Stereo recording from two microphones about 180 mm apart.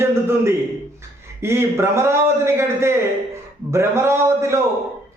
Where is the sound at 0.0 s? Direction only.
15° right (ahead or behind).